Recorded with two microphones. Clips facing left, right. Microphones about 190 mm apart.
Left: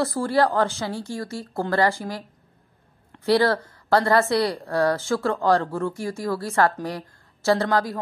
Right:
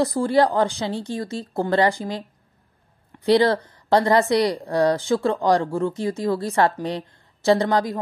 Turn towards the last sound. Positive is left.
turn(degrees=-20)  # may be behind; listen again after turning